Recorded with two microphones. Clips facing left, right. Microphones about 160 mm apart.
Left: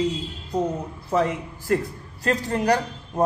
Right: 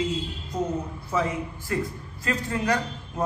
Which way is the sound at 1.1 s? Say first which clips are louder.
Left 4 dB; 40° left (ahead or behind).